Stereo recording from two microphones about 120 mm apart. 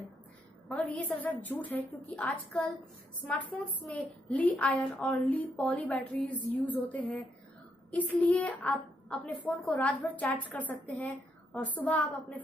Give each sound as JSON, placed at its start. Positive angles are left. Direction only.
{"t": 0.7, "sound": "a woman's voice", "side_deg": 10}
{"t": 7.9, "sound": "a woman's voice", "side_deg": 10}